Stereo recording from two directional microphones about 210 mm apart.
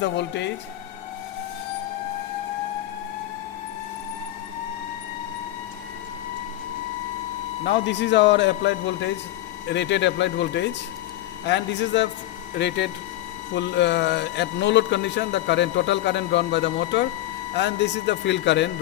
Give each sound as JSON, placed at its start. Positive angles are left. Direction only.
{"t": 0.0, "sound": "speech", "side_deg": 55}
{"t": 7.6, "sound": "speech", "side_deg": 55}